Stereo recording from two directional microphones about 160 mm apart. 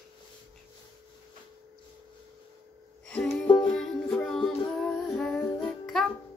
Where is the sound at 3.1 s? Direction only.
5° left (ahead or behind).